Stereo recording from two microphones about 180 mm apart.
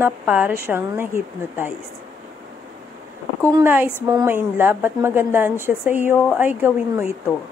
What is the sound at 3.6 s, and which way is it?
A woman's voice, 10° right (ahead or behind).